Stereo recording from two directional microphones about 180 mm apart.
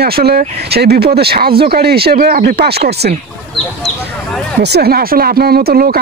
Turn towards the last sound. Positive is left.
turn(degrees=-55)  # may be behind; listen again after turning